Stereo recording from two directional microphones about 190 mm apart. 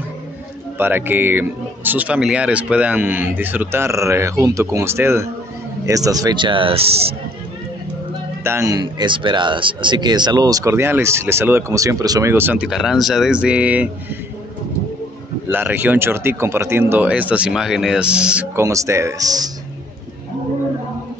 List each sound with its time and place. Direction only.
0.7 s speech: 10° right (ahead or behind); by 7.2 s 30° right (ahead or behind)
8.5 s speech: 15° right (ahead or behind)
15.5 s speech: 10° right (ahead or behind)